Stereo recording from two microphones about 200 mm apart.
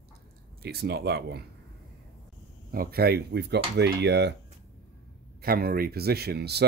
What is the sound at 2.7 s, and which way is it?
Speech, 50° right (ahead or behind).